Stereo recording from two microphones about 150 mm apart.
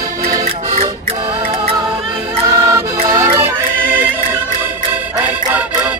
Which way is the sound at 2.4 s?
20° right (ahead or behind).